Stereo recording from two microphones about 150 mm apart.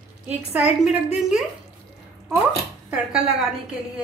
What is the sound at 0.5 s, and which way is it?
Speech, 5° right (ahead or behind).